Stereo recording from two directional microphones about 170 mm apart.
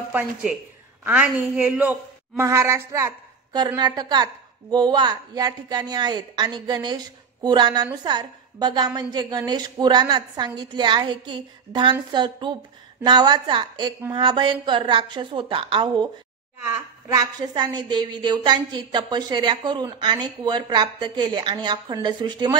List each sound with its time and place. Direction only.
0.1 s a woman's voice: 5° right (ahead or behind); by 22.6 s 25° right (ahead or behind)